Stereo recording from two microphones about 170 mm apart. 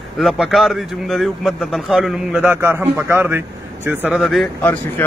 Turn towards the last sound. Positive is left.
turn(degrees=10)  # may be behind; listen again after turning